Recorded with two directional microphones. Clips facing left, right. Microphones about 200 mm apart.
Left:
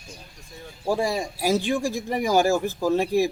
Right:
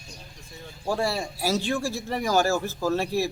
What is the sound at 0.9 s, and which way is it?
A man's voice, 15° left (ahead or behind).